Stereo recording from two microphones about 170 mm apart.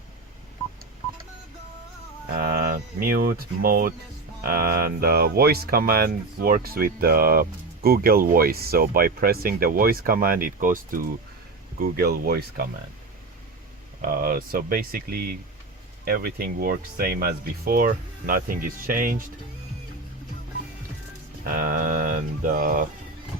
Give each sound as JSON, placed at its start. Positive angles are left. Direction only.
{"t": 2.3, "sound": "speech", "side_deg": -60}
{"t": 14.0, "sound": "speech", "side_deg": -60}
{"t": 21.6, "sound": "mantra", "side_deg": -55}